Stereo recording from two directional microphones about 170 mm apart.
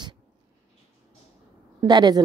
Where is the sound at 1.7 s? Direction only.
25° right (ahead or behind).